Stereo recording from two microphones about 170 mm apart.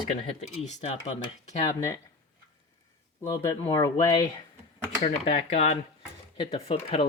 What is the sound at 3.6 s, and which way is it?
Speech, 25° left (ahead or behind).